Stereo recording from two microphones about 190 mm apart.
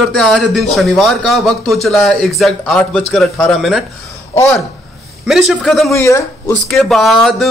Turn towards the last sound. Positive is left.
turn(degrees=0)  # may be behind; listen again after turning